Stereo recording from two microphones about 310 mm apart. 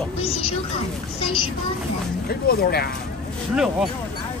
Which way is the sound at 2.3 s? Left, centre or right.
Left.